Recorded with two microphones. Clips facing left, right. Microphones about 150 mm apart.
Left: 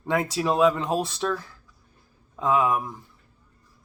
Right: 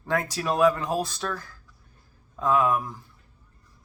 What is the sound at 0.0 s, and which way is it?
Speech, 20° left (ahead or behind).